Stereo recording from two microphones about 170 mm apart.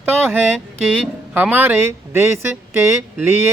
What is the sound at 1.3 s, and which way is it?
Speech, 10° right (ahead or behind).